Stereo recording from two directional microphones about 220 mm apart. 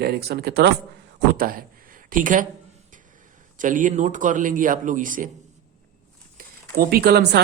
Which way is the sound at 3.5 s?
35° right (ahead or behind).